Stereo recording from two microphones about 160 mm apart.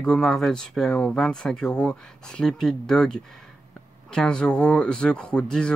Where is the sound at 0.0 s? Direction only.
5° left (ahead or behind).